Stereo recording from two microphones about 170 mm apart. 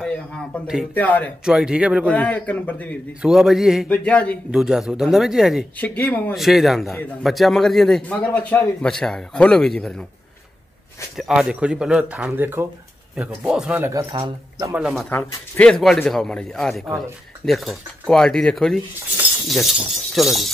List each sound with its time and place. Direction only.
0.9 s a man's voice: 10° left (ahead or behind)
1.4 s a man's voice: 5° right (ahead or behind)
2.1 s a man's voice: 10° left (ahead or behind)
3.2 s a man's voice: 5° right (ahead or behind)
4.5 s a man's voice: 5° right (ahead or behind)
5.8 s a man's voice: 10° left (ahead or behind)
6.3 s a man's voice: centre (ahead or behind)
11.1 s a man's voice: centre (ahead or behind); by 14.7 s 20° right (ahead or behind)
14.7 s a man's voice: 5° right (ahead or behind)
15.0 s a man's voice: 10° left (ahead or behind)